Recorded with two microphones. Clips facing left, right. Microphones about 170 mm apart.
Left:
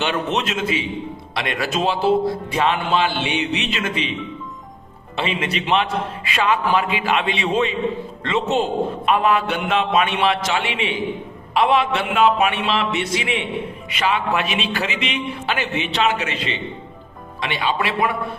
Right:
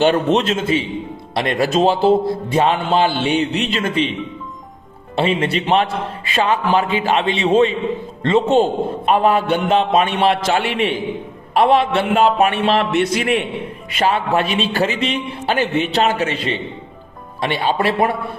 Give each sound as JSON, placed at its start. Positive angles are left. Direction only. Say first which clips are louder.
{"t": 0.0, "sound": "a man's voice", "louder": "right 7 dB", "side_deg": -35}
{"t": 1.4, "sound": "a man's voice", "louder": "right 7 dB", "side_deg": -40}
{"t": 5.1, "sound": "a man's voice", "louder": "right 6 dB", "side_deg": -35}
{"t": 14.0, "sound": "a man's voice", "louder": "right 4 dB", "side_deg": -35}